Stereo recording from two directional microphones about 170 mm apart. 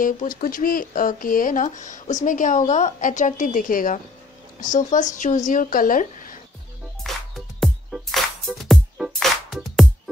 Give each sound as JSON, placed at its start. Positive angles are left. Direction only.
{"t": 0.0, "sound": "speech", "side_deg": 55}
{"t": 7.0, "sound": "music", "side_deg": 0}